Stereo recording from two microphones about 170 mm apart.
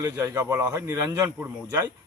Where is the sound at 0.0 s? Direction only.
20° right (ahead or behind).